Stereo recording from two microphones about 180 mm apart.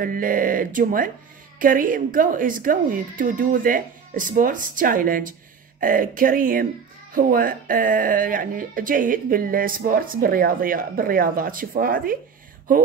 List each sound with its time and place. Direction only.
0.0 s speech: 50° right (ahead or behind)